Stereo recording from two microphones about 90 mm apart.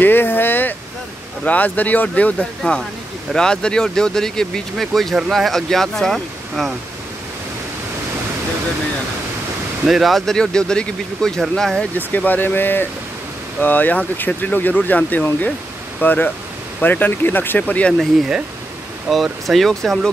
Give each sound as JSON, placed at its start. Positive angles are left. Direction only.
{"t": 0.0, "sound": "a sound", "side_deg": 25}
{"t": 1.4, "sound": "speech", "side_deg": 15}
{"t": 9.8, "sound": "speech", "side_deg": 0}
{"t": 12.1, "sound": "speech", "side_deg": 20}
{"t": 19.0, "sound": "speech", "side_deg": 0}